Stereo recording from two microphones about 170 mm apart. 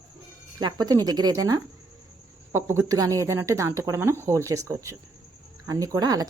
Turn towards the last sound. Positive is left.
turn(degrees=-20)  # may be behind; listen again after turning